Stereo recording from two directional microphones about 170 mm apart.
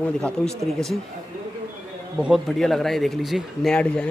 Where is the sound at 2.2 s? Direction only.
Centre (ahead or behind).